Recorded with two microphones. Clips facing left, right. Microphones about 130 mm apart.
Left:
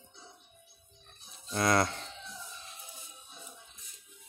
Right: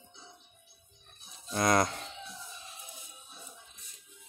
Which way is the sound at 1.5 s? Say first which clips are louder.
Right 1 dB; 20° right (ahead or behind).